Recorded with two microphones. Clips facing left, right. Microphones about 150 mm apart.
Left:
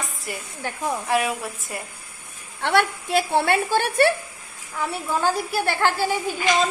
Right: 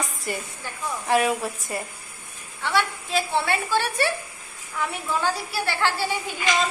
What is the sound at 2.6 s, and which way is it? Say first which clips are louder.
A woman's voice: left 4 dB; 60° left (ahead or behind).